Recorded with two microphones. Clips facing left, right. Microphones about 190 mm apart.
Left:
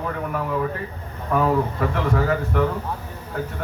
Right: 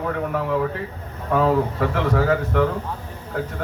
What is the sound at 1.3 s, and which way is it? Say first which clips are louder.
A man's voice: right 1 dB; 90° right.